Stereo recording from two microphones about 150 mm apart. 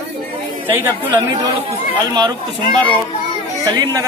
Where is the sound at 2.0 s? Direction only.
25° right (ahead or behind).